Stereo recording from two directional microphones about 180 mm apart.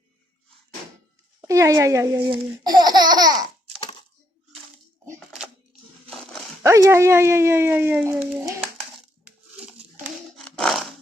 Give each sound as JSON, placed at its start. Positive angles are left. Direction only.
{"t": 1.4, "sound": "speech", "side_deg": -15}
{"t": 6.1, "sound": "dog", "side_deg": 5}
{"t": 6.6, "sound": "speech", "side_deg": -15}
{"t": 9.2, "sound": "a sound", "side_deg": -5}